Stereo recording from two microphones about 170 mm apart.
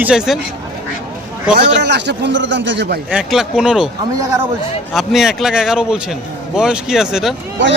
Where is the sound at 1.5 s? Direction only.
85° right.